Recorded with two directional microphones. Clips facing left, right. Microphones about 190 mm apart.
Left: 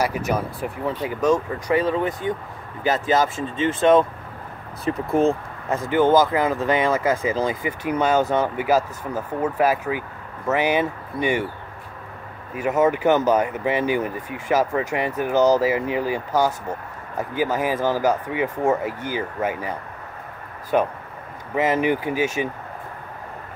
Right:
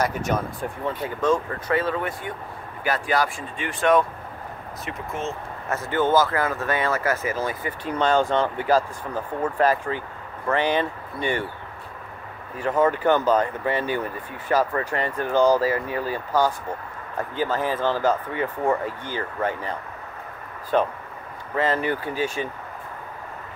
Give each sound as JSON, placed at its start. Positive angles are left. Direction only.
{"t": 1.0, "sound": "speech", "side_deg": 15}
{"t": 4.8, "sound": "speech", "side_deg": 35}
{"t": 5.7, "sound": "speech", "side_deg": 15}
{"t": 12.5, "sound": "speech", "side_deg": 10}
{"t": 20.7, "sound": "speech", "side_deg": 10}